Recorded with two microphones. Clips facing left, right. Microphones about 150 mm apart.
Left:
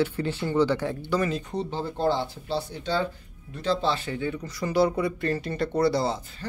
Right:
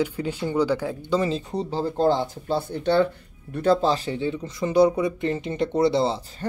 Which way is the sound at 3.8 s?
35° right (ahead or behind).